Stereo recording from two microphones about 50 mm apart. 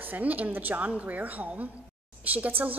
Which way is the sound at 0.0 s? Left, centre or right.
Right.